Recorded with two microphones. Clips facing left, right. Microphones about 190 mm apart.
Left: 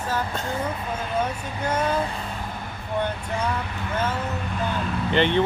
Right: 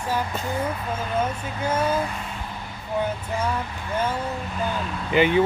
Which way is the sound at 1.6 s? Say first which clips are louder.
Right 1 dB; 5° right (ahead or behind).